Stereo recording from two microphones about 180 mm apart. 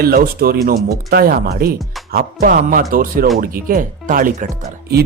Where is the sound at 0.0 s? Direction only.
55° right (ahead or behind).